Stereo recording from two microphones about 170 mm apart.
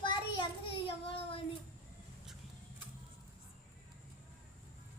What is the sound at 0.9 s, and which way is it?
Child singing, 30° left (ahead or behind).